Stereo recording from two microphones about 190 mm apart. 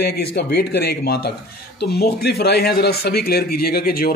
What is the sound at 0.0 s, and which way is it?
Speech, 55° left (ahead or behind).